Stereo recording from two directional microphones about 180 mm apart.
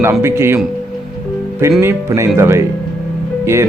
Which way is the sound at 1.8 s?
15° right (ahead or behind).